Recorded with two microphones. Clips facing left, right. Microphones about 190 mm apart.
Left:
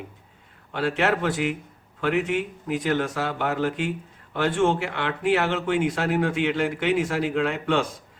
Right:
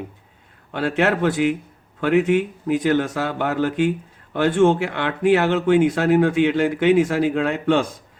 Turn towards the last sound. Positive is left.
turn(degrees=-40)  # may be behind; listen again after turning